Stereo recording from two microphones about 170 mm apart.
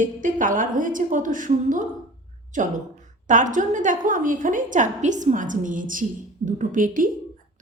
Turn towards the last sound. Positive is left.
turn(degrees=-50)  # may be behind; listen again after turning